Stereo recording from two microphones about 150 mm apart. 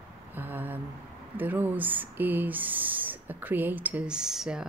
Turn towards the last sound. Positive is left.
turn(degrees=-5)  # may be behind; listen again after turning